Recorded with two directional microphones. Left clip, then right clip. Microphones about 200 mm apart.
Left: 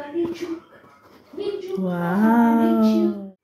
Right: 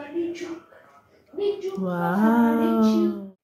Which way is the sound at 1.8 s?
Centre (ahead or behind).